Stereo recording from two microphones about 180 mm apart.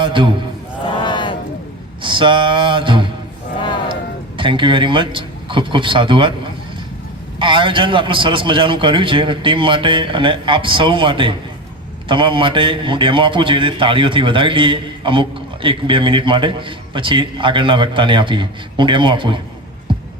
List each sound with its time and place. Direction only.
0.0 s a man's voice: 25° right (ahead or behind)
0.9 s a sound: 25° left (ahead or behind)
2.0 s music: 25° right (ahead or behind)
4.4 s a man's voice: 25° right (ahead or behind)
7.3 s a man's voice: 25° right (ahead or behind)